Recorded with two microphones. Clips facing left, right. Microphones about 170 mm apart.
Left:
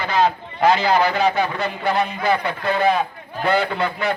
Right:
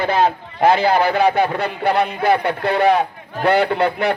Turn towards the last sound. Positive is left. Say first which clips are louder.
# right 4 dB
turn(degrees=-65)  # may be behind; listen again after turning